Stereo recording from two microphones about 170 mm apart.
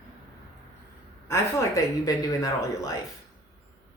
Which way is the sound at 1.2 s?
20° left (ahead or behind).